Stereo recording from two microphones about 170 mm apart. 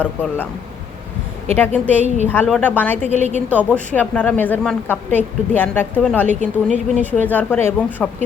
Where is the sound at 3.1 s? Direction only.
40° right (ahead or behind).